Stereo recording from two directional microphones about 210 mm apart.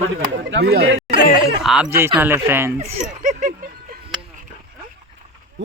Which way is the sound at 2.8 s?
30° right (ahead or behind).